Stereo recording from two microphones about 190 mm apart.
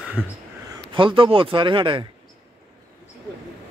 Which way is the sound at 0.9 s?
25° right (ahead or behind).